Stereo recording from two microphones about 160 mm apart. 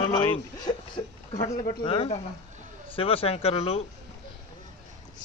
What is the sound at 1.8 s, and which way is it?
Speech, 35° left (ahead or behind).